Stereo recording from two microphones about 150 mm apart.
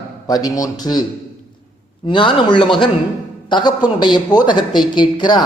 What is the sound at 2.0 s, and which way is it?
A man's voice, 35° left (ahead or behind).